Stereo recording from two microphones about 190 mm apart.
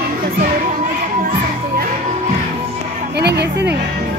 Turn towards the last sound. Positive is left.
turn(degrees=-60)  # may be behind; listen again after turning